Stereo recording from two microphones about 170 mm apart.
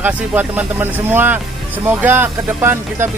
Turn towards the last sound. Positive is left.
turn(degrees=-15)  # may be behind; listen again after turning